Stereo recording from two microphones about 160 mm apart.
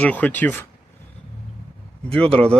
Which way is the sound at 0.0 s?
10° left (ahead or behind).